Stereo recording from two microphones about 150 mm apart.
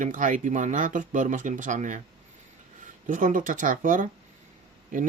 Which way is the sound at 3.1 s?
65° right (ahead or behind).